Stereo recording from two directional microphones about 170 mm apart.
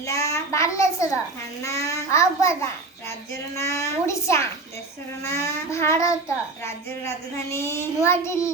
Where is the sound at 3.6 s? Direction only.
15° left (ahead or behind).